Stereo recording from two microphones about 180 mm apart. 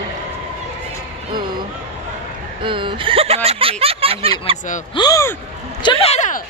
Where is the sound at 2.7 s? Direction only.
30° right (ahead or behind).